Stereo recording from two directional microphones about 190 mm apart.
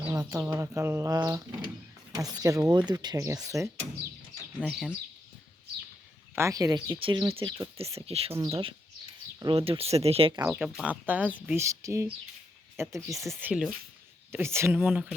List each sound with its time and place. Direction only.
0.0 s speech: 15° right (ahead or behind)
4.6 s speech: 5° right (ahead or behind)
6.3 s speech: 15° right (ahead or behind); by 8.4 s 30° right (ahead or behind)
8.4 s speech: 15° right (ahead or behind)
9.4 s speech: 30° right (ahead or behind)
10.4 s speech: 5° right (ahead or behind)
13.4 s speech: 5° right (ahead or behind)